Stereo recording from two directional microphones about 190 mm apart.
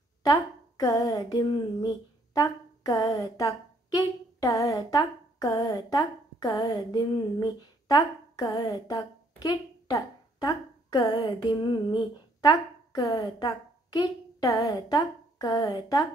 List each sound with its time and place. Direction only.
0.2 s a woman's voice: 20° left (ahead or behind)